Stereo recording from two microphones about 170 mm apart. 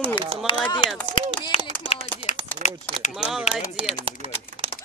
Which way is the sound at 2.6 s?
45° right (ahead or behind).